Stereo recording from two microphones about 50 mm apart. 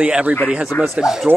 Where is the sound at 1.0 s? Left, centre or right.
Centre.